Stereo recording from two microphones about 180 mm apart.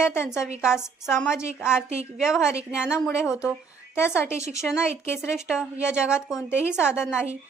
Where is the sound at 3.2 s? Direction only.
15° left (ahead or behind).